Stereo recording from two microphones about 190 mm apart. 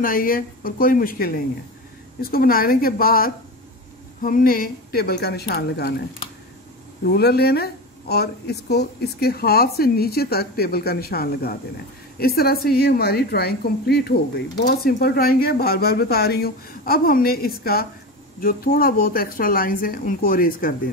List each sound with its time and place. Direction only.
0.0 s speech: 45° left (ahead or behind)
7.1 s speech: 55° left (ahead or behind)